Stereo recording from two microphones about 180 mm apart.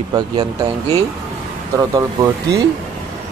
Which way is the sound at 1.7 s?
15° right (ahead or behind).